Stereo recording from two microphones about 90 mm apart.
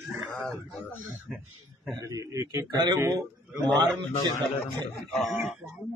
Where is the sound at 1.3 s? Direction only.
Centre (ahead or behind).